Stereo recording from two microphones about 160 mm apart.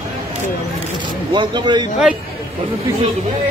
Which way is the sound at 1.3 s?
30° right (ahead or behind).